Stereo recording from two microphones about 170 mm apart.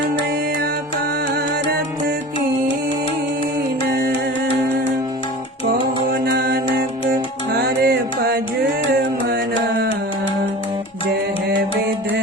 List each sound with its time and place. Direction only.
6.1 s music: 65° right (ahead or behind)